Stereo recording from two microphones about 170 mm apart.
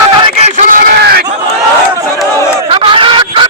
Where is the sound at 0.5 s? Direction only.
55° right (ahead or behind); by 1.3 s 70° right (ahead or behind).